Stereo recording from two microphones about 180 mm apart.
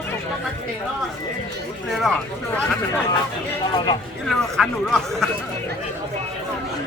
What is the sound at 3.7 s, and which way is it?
Speech, 25° left (ahead or behind).